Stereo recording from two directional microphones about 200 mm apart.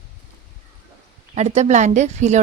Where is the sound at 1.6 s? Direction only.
35° right (ahead or behind).